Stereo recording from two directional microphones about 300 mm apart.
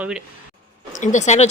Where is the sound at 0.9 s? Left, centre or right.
Left.